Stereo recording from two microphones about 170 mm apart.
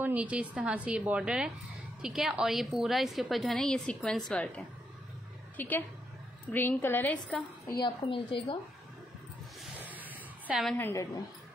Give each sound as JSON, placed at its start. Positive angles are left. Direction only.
{"t": 0.0, "sound": "a woman's voice", "side_deg": -10}
{"t": 7.8, "sound": "a woman's voice", "side_deg": 30}
{"t": 9.8, "sound": "a sound", "side_deg": -10}
{"t": 10.8, "sound": "a woman's voice", "side_deg": 15}